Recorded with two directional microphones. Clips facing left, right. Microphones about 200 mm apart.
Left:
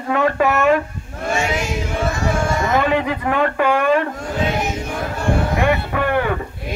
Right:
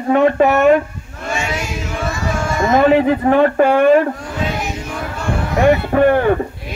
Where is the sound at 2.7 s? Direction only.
35° right (ahead or behind).